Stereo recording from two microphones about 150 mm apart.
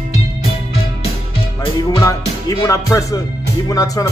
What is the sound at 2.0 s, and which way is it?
Music, 25° left (ahead or behind).